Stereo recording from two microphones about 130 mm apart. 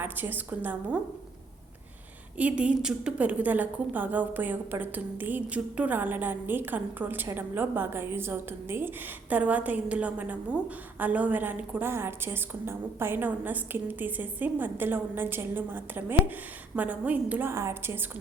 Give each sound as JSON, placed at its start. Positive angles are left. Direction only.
{"t": 0.0, "sound": "a woman's voice", "side_deg": -15}
{"t": 2.4, "sound": "a woman's voice", "side_deg": -10}